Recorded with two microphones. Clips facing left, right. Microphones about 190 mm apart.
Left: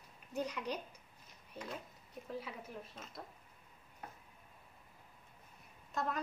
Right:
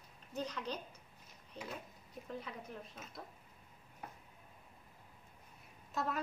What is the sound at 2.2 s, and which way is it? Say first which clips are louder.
Speech: left 1 dB; 5° left (ahead or behind).